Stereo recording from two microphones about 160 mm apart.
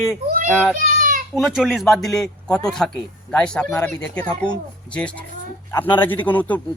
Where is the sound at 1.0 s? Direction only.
55° right (ahead or behind).